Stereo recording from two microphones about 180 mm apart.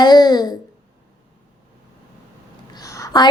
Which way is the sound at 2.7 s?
20° left (ahead or behind).